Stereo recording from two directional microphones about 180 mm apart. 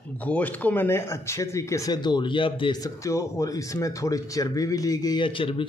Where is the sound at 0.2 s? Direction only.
10° left (ahead or behind).